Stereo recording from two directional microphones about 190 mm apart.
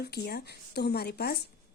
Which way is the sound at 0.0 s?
55° left (ahead or behind).